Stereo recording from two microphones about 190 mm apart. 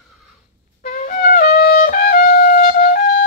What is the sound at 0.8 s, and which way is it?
Trumpet, 45° left (ahead or behind).